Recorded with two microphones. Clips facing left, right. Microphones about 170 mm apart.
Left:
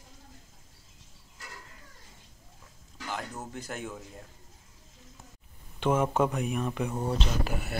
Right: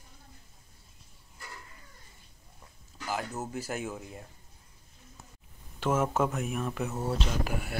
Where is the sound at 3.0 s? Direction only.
5° right (ahead or behind).